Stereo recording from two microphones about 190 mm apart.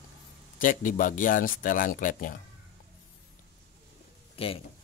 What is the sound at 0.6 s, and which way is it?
Speech, 45° left (ahead or behind).